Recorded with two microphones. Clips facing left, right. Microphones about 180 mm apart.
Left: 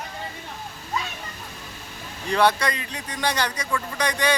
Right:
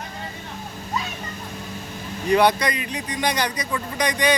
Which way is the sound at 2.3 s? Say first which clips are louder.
Right 3 dB; 15° right (ahead or behind).